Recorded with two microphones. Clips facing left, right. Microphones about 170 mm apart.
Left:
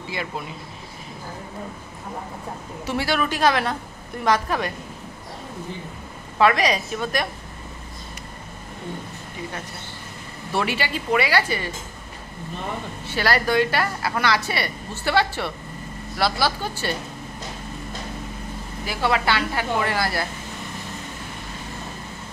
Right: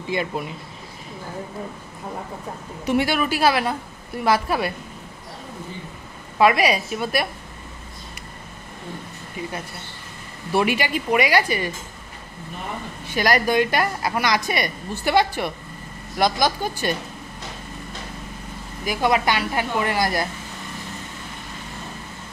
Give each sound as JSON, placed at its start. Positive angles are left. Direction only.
{"t": 2.9, "sound": "a woman's voice", "side_deg": -15}
{"t": 6.3, "sound": "a woman's voice", "side_deg": -10}
{"t": 10.5, "sound": "a woman's voice", "side_deg": -15}
{"t": 13.0, "sound": "a woman's voice", "side_deg": -15}
{"t": 18.9, "sound": "a woman's voice", "side_deg": -15}